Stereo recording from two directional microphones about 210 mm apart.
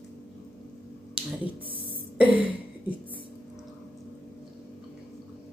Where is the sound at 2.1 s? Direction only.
10° right (ahead or behind).